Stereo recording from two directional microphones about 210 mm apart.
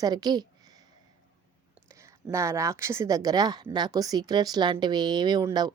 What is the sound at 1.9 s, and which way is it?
A woman's voice, 15° right (ahead or behind).